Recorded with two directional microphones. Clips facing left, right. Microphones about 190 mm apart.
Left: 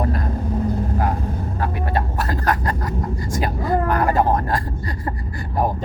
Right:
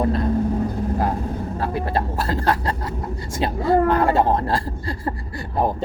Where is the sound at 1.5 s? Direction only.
30° right (ahead or behind).